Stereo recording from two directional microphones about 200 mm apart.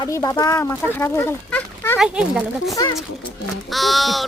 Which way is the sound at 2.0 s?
Centre (ahead or behind).